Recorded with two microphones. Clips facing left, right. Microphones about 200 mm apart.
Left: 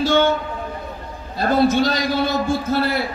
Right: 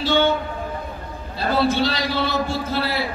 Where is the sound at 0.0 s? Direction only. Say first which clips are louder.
Left 2 dB; 45° left (ahead or behind).